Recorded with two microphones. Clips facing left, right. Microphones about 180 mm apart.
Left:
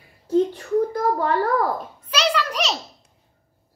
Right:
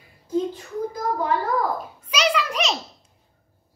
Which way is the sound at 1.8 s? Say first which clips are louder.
Even; 5° right (ahead or behind).